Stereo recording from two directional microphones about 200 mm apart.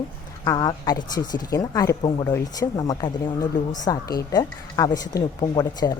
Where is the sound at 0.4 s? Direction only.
20° left (ahead or behind).